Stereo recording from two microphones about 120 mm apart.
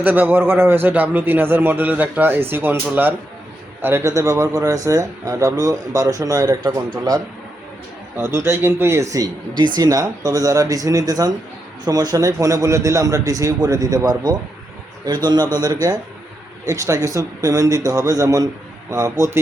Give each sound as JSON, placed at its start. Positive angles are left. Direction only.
{"t": 0.0, "sound": "a man's voice", "side_deg": -15}
{"t": 8.2, "sound": "speech", "side_deg": -20}